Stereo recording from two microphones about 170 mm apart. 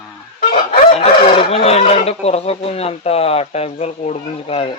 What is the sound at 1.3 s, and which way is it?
Speech, 35° left (ahead or behind).